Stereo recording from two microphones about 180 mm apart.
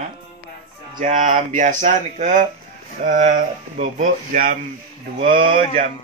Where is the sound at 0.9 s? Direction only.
45° right (ahead or behind).